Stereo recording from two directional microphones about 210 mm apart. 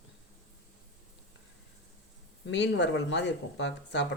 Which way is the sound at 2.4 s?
55° left (ahead or behind).